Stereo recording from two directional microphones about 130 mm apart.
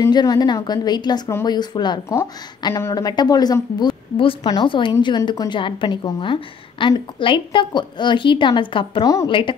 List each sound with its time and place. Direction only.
0.0 s a woman's voice: 30° left (ahead or behind)
2.0 s a woman's voice: 25° left (ahead or behind); by 9.6 s 40° left (ahead or behind)